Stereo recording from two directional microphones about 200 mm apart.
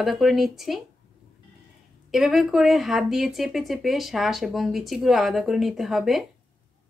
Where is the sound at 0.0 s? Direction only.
Centre (ahead or behind).